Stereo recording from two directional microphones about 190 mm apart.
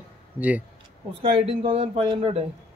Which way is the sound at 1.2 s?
30° right (ahead or behind).